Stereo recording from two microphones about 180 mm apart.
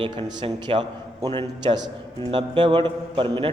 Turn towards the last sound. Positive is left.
turn(degrees=-30)  # may be behind; listen again after turning